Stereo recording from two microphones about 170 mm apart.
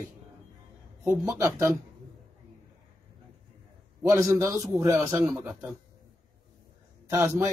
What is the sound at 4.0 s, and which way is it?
A man's voice, 15° right (ahead or behind).